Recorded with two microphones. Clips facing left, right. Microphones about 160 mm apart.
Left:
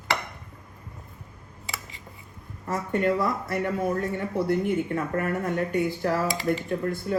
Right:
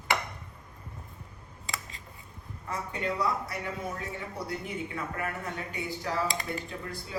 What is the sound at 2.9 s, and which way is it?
A man's voice, 55° left (ahead or behind).